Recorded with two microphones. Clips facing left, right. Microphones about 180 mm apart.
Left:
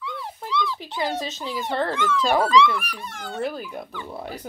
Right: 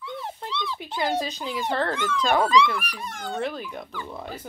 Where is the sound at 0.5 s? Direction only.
20° right (ahead or behind).